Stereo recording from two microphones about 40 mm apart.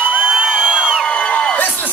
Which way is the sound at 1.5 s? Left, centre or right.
Left.